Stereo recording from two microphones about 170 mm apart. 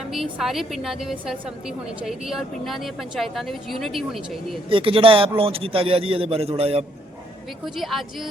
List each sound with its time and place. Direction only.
0.1 s a woman's voice: centre (ahead or behind)
4.7 s a man's voice: 30° right (ahead or behind)
7.6 s a woman's voice: centre (ahead or behind)